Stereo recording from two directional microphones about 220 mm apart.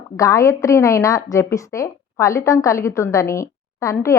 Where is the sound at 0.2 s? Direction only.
15° left (ahead or behind).